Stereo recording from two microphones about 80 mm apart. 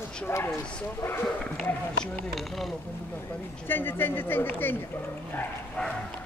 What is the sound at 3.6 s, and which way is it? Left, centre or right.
Speech, left.